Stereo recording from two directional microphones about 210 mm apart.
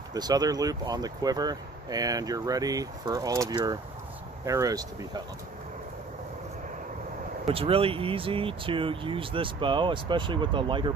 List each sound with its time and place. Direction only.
0.1 s speech: 20° right (ahead or behind)
7.4 s speech: 25° right (ahead or behind)